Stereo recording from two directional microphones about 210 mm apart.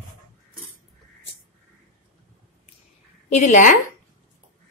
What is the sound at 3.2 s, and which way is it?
Speech, 35° left (ahead or behind).